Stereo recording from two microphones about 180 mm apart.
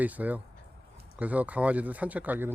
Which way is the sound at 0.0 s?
10° right (ahead or behind).